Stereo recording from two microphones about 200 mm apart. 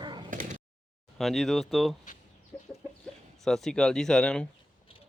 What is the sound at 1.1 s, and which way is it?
Speech, centre (ahead or behind).